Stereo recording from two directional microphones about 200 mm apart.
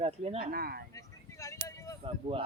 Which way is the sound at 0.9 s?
15° left (ahead or behind).